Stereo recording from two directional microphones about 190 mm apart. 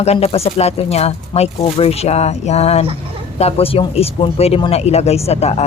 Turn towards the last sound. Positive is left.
turn(degrees=35)  # may be behind; listen again after turning